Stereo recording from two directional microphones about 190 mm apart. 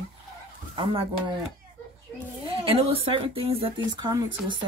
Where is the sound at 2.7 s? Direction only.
30° right (ahead or behind).